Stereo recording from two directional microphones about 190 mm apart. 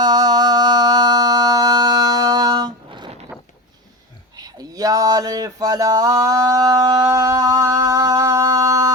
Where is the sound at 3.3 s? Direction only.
5° right (ahead or behind).